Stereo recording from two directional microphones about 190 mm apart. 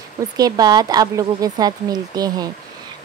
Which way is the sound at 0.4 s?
20° right (ahead or behind).